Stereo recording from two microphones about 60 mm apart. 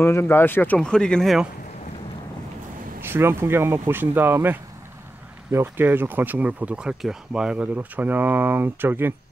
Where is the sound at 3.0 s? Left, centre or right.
Right.